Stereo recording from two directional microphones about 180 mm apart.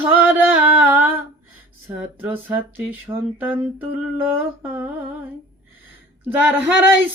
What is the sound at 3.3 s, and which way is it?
Mantra, 10° right (ahead or behind).